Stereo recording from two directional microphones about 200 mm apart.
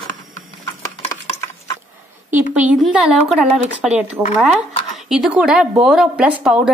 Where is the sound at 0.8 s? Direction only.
20° left (ahead or behind).